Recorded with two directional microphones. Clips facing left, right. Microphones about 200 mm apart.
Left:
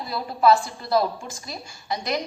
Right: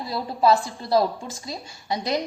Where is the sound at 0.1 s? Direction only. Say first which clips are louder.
Left 1 dB; 25° right (ahead or behind).